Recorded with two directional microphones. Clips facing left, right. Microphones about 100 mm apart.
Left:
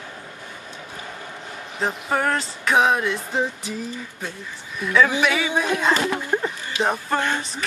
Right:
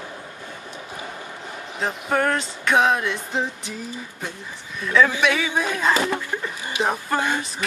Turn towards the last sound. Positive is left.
turn(degrees=0)  # may be behind; listen again after turning